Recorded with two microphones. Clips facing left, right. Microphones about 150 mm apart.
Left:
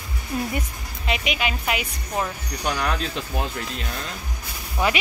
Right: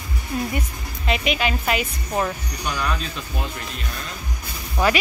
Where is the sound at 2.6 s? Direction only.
75° left (ahead or behind).